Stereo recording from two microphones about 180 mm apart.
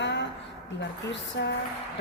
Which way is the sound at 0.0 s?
75° left (ahead or behind).